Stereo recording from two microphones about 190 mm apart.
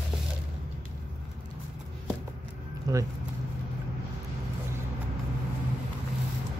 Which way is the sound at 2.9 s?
20° right (ahead or behind).